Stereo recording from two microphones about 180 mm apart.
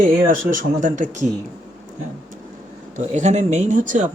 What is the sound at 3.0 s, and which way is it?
Speech, 40° right (ahead or behind).